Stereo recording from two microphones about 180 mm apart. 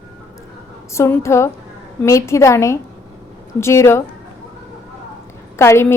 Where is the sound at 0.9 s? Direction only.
15° left (ahead or behind).